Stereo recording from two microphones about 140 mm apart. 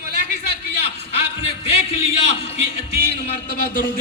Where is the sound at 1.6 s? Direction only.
45° left (ahead or behind).